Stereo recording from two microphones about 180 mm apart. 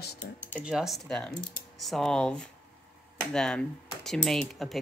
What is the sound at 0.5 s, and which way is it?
Speech, 5° right (ahead or behind).